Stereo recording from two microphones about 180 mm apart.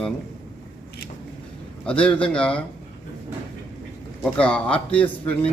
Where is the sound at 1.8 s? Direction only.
5° left (ahead or behind).